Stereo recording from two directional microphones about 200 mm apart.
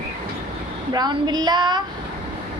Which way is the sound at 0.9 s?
20° right (ahead or behind).